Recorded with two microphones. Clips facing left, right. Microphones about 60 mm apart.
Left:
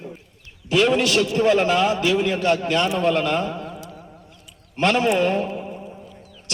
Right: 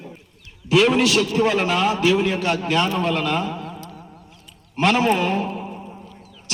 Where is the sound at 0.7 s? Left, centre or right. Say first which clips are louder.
Right 1 dB; centre.